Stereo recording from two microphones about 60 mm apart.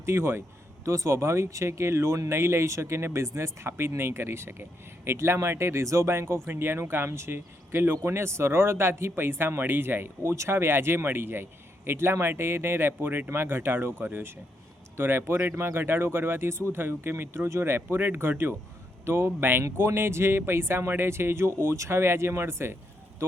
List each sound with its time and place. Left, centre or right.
0.0 s speech: right